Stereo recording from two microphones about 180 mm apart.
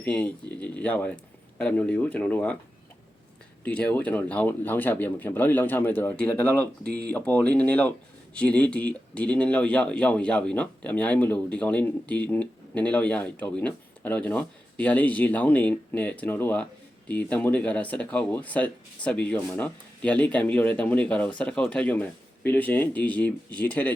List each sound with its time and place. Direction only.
0.0 s speech: 10° left (ahead or behind)
3.6 s speech: 10° left (ahead or behind)
6.8 s speech: 60° right (ahead or behind)
7.1 s speech: 10° left (ahead or behind)